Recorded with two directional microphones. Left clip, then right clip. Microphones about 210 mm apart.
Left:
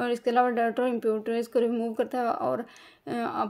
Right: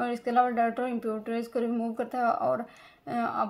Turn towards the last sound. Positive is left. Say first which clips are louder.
# even
turn(degrees=35)  # may be behind; listen again after turning